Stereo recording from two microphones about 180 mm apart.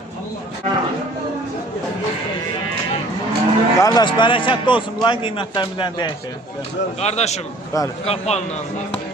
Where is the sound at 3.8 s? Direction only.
20° left (ahead or behind).